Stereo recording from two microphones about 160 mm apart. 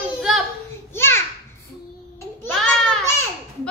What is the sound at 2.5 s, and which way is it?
Child singing, 5° left (ahead or behind).